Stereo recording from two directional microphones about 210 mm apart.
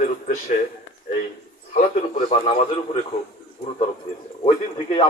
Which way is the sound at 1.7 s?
40° left (ahead or behind).